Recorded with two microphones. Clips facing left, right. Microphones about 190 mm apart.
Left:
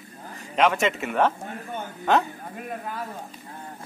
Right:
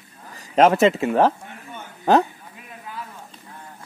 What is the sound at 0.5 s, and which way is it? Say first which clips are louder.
Speech: right 7 dB; 40° right (ahead or behind).